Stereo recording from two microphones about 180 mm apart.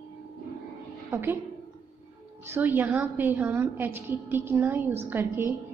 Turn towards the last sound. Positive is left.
turn(degrees=-10)  # may be behind; listen again after turning